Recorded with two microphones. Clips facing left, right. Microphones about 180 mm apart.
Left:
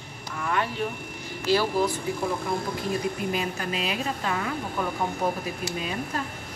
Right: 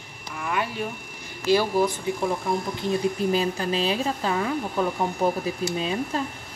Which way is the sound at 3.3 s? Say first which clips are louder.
Right 5 dB; 30° right (ahead or behind).